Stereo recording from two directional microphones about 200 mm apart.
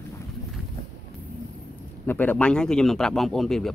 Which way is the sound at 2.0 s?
10° left (ahead or behind).